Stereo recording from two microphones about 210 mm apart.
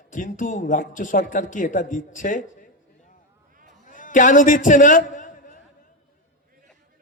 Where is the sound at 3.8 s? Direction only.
40° left (ahead or behind).